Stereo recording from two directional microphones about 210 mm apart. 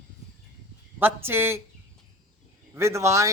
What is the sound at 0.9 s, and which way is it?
Speech, 10° right (ahead or behind).